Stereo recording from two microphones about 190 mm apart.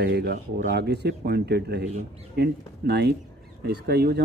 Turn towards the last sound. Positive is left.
turn(degrees=-60)  # may be behind; listen again after turning